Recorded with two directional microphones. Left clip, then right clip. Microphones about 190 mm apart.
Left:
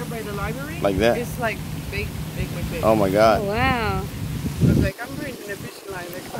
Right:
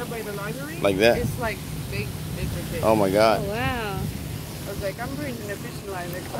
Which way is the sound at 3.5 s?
35° left (ahead or behind).